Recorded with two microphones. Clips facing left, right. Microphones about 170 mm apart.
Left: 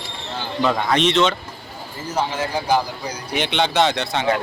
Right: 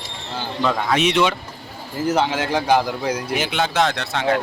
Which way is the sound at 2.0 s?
80° right.